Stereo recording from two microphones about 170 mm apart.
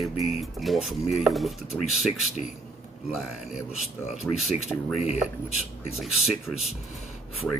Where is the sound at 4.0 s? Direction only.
40° left (ahead or behind).